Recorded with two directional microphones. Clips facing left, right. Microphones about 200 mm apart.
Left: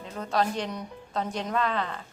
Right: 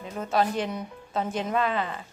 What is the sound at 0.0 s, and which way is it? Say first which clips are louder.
A woman's voice: right 2 dB; 5° right (ahead or behind).